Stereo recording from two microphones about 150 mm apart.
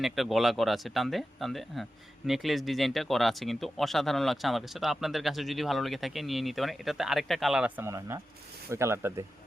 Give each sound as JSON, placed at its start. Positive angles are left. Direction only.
{"t": 0.0, "sound": "speech", "side_deg": 0}
{"t": 7.8, "sound": "speech", "side_deg": -20}